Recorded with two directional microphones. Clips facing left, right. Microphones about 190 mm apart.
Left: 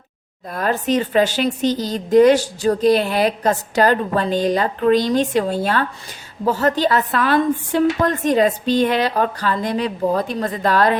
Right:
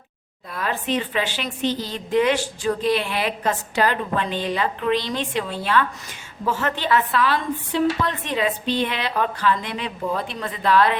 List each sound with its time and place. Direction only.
0.4 s speech: 45° left (ahead or behind)